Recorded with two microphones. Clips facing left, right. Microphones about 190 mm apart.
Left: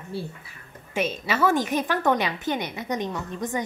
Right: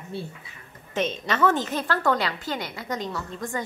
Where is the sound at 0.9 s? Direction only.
10° left (ahead or behind).